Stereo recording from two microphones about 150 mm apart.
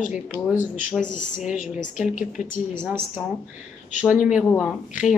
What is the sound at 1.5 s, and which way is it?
Speech, 5° right (ahead or behind).